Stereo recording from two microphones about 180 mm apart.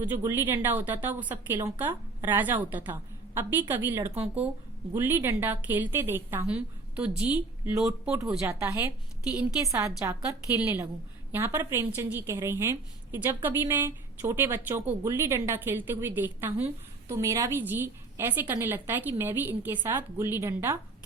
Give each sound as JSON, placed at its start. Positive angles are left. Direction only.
{"t": 0.0, "sound": "a woman's voice", "side_deg": -15}